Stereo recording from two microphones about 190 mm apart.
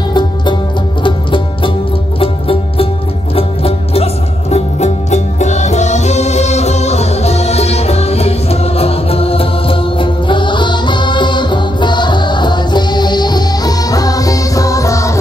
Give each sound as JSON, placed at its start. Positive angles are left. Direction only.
{"t": 1.0, "sound": "music", "side_deg": 25}